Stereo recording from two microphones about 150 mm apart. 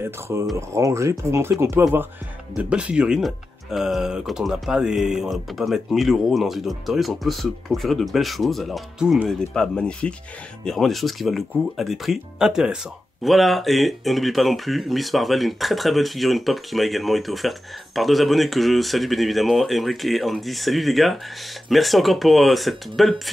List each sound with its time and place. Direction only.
0.0 s speech: 15° right (ahead or behind); by 23.3 s centre (ahead or behind)